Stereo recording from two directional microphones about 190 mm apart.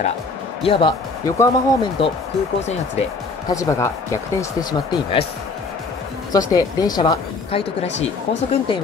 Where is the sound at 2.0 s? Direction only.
30° left (ahead or behind).